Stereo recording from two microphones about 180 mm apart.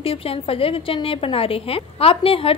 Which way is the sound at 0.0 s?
30° left (ahead or behind).